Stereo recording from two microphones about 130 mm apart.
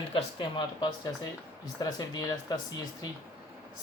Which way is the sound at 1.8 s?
30° left (ahead or behind).